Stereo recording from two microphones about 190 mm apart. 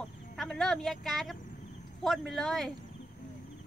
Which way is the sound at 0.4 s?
Centre (ahead or behind).